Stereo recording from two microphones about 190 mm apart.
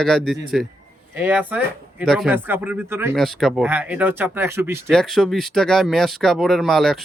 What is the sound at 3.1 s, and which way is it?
Speech, centre (ahead or behind).